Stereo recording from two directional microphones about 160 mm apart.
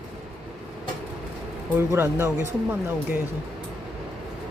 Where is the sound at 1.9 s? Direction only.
15° right (ahead or behind).